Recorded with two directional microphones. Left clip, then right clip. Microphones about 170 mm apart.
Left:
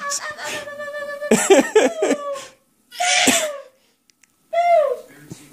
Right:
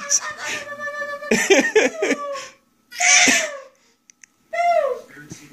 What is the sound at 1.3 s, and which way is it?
Speech, 20° left (ahead or behind).